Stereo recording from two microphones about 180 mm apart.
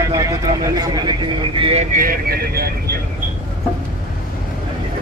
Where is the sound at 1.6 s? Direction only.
35° right (ahead or behind).